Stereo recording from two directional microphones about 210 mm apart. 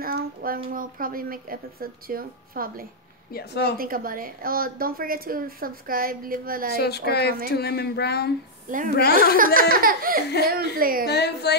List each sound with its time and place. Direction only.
0.0 s speech: 45° right (ahead or behind)
3.3 s speech: 50° left (ahead or behind)
3.7 s speech: 45° right (ahead or behind)
6.8 s speech: 50° left (ahead or behind)
8.6 s a woman's voice: 40° right (ahead or behind)
11.1 s speech: 50° left (ahead or behind)